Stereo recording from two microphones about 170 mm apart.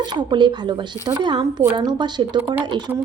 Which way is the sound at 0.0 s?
25° right (ahead or behind).